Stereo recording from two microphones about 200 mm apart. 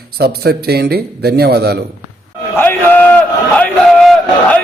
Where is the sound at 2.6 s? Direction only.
10° left (ahead or behind).